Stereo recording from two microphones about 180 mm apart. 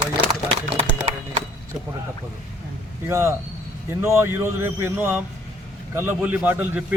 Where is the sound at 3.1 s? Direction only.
15° right (ahead or behind).